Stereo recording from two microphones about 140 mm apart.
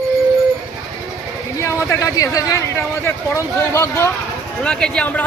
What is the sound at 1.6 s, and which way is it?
A man's voice, 20° left (ahead or behind).